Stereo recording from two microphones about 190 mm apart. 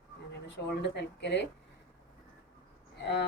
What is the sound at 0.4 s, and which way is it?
Speech, 65° left (ahead or behind).